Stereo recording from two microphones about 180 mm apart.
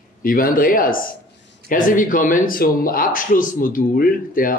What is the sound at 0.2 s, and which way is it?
Speech, 50° left (ahead or behind).